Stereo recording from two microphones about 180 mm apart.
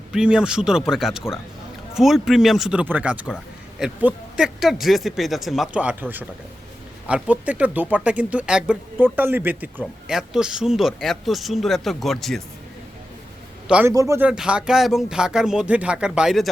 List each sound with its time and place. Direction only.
0.1 s speech: 5° right (ahead or behind)
13.7 s a man's voice: 5° right (ahead or behind)
13.9 s speech: 15° right (ahead or behind)
14.3 s speech: 5° right (ahead or behind)